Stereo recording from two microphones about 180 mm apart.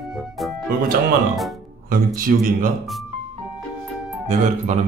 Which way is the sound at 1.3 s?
Centre (ahead or behind).